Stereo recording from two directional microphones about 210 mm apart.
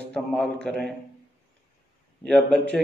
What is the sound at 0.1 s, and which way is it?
Speech, 5° left (ahead or behind).